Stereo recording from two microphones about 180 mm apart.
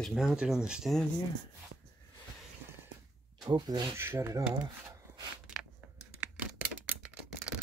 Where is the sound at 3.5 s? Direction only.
25° right (ahead or behind).